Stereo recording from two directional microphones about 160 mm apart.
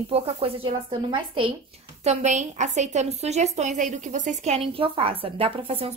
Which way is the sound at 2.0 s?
45° right (ahead or behind).